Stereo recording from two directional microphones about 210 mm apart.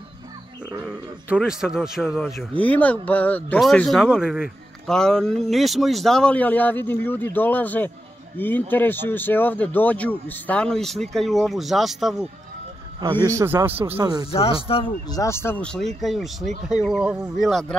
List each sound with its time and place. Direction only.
0.8 s speech: centre (ahead or behind)
13.0 s a man's voice: 15° right (ahead or behind)
14.3 s speech: 25° left (ahead or behind); by 17.7 s centre (ahead or behind)